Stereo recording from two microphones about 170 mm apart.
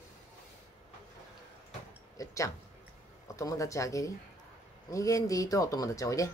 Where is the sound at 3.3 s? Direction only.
20° left (ahead or behind).